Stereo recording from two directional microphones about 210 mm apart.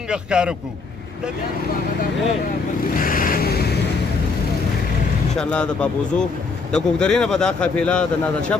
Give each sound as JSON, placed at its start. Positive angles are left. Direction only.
{"t": 0.1, "sound": "speech", "side_deg": -5}
{"t": 2.9, "sound": "vehicle", "side_deg": 40}
{"t": 5.4, "sound": "speech", "side_deg": 5}